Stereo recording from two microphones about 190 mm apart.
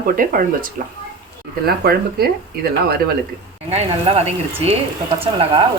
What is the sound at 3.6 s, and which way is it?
Speech, 35° right (ahead or behind).